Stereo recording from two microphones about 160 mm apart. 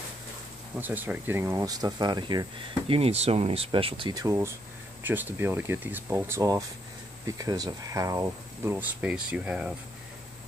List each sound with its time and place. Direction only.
0.7 s speech: 10° right (ahead or behind); by 2.4 s 25° right (ahead or behind)
2.9 s speech: 40° right (ahead or behind); by 9.8 s 10° right (ahead or behind)